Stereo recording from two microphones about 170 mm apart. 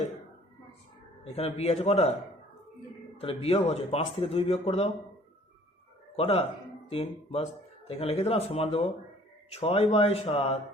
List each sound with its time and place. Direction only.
1.3 s speech: 40° left (ahead or behind)
3.2 s speech: 35° left (ahead or behind)
6.1 s speech: 35° left (ahead or behind)